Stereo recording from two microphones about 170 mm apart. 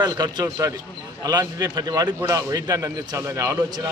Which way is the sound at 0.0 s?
25° right (ahead or behind).